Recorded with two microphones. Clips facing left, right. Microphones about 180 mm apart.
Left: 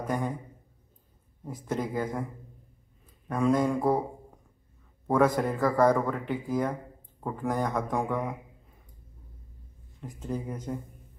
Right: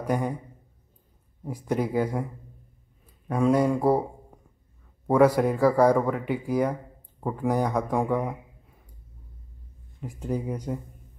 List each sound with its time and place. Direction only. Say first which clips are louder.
0.1 s speech: right 4 dB; 15° right (ahead or behind)
1.4 s speech: right 5 dB; 15° right (ahead or behind)
3.3 s speech: right 3 dB; 10° right (ahead or behind)
5.0 s speech: right 5 dB; 10° right (ahead or behind)
9.9 s speech: right 4 dB; 10° right (ahead or behind)